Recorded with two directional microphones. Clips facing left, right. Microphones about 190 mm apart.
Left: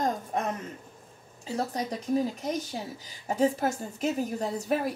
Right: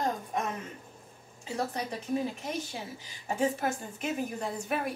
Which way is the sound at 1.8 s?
40° left (ahead or behind).